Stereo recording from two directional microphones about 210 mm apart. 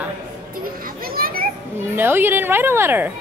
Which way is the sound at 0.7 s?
45° right (ahead or behind).